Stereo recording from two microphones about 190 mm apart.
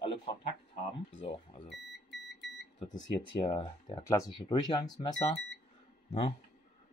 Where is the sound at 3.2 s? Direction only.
25° left (ahead or behind).